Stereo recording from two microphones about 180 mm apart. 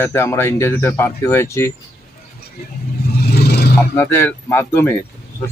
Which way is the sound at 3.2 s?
65° left (ahead or behind).